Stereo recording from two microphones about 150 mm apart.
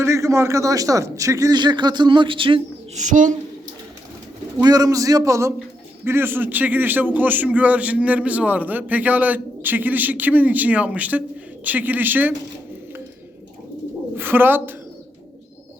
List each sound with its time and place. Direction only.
0.0 s a man's voice: 20° right (ahead or behind); by 2.6 s 35° right (ahead or behind)
2.9 s speech: 55° right (ahead or behind)
4.6 s a man's voice: 25° right (ahead or behind)
14.2 s speech: 15° right (ahead or behind)